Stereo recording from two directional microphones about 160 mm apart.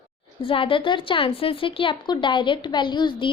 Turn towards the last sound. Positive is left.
turn(degrees=30)  # may be behind; listen again after turning